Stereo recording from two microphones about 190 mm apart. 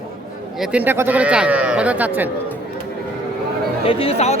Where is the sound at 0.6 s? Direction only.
5° right (ahead or behind).